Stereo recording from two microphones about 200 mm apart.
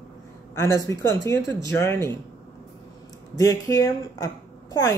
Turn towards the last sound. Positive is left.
turn(degrees=20)  # may be behind; listen again after turning